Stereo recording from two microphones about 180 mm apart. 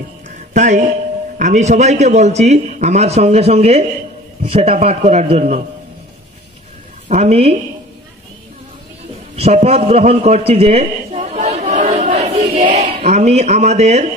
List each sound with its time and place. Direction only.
0.5 s a man's voice: 45° right (ahead or behind)
7.1 s a man's voice: 35° right (ahead or behind)
9.3 s a sound: 35° right (ahead or behind)